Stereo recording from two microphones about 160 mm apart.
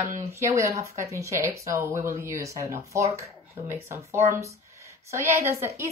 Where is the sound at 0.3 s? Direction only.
20° right (ahead or behind).